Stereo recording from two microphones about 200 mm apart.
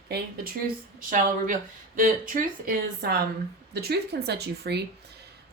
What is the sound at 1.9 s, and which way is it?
Speech, 45° right (ahead or behind).